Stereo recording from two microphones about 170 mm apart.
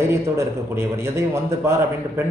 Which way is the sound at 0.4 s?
15° right (ahead or behind).